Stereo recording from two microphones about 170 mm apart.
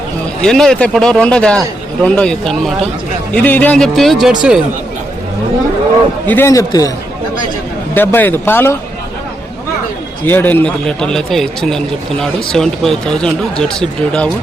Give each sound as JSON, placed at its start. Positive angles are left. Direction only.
{"t": 0.4, "sound": "speech", "side_deg": 5}
{"t": 6.2, "sound": "a man's voice", "side_deg": 10}
{"t": 7.9, "sound": "a man's voice", "side_deg": 10}
{"t": 10.2, "sound": "speech", "side_deg": 10}